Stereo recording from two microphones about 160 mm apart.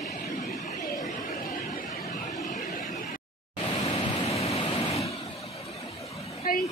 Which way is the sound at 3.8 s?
35° left (ahead or behind).